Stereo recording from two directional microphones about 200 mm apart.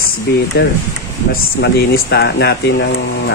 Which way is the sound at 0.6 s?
55° left (ahead or behind).